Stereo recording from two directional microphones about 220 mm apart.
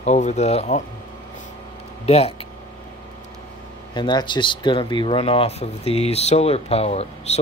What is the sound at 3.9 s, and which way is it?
Speech, 20° left (ahead or behind).